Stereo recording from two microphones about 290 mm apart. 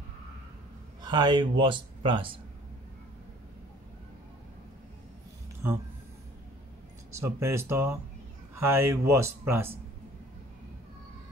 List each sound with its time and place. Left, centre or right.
1.0 s speech: centre
7.1 s speech: centre